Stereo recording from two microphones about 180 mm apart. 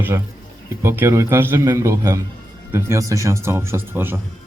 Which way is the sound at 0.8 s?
15° right (ahead or behind).